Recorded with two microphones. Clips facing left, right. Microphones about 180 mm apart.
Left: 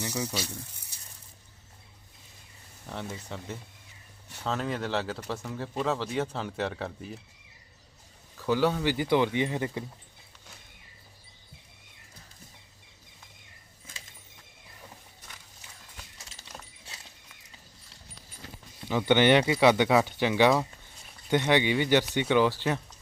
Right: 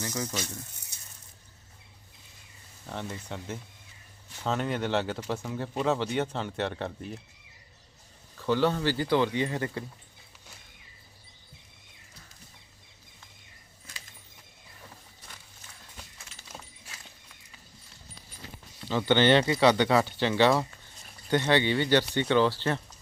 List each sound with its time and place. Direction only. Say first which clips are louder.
0.0 s speech: left 1 dB; 15° left (ahead or behind)
2.9 s speech: right 1 dB; 5° left (ahead or behind)
8.4 s speech: even; 5° left (ahead or behind)
18.9 s speech: left 1 dB; 15° left (ahead or behind)